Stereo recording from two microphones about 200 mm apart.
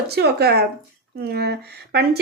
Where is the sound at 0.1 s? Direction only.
55° right (ahead or behind).